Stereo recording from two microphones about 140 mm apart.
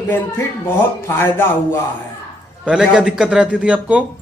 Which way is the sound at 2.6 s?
5° right (ahead or behind).